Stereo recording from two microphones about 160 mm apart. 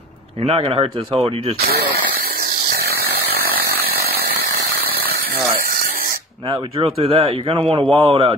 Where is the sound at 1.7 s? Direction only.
75° right (ahead or behind).